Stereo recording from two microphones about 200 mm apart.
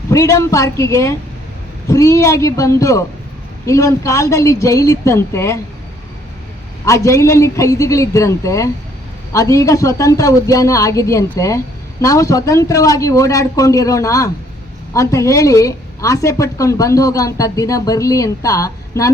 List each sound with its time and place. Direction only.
0.1 s a woman's voice: 15° left (ahead or behind)
6.8 s a woman's voice: 15° left (ahead or behind)